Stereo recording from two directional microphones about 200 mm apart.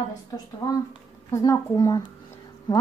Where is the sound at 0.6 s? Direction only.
20° left (ahead or behind).